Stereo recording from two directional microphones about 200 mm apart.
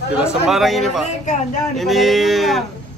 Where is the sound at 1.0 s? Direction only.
35° left (ahead or behind).